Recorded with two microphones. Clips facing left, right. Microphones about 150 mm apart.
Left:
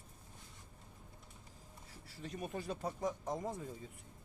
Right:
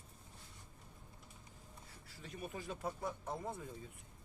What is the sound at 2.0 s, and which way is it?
Speech, 40° left (ahead or behind).